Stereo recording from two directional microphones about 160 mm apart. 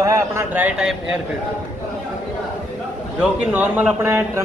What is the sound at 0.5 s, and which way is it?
Speech, 10° right (ahead or behind).